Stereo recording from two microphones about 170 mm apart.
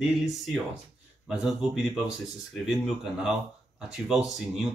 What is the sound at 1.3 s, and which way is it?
Speech, centre (ahead or behind).